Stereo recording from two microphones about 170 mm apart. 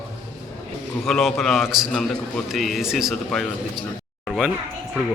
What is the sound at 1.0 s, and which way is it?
A man's voice, centre (ahead or behind).